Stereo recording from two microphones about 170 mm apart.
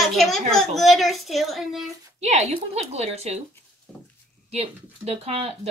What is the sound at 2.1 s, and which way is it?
Speech, 40° right (ahead or behind).